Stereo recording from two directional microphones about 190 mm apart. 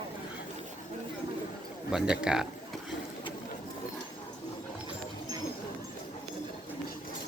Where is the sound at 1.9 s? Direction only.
5° right (ahead or behind).